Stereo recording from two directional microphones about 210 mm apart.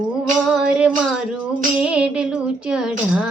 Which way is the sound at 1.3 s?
5° right (ahead or behind).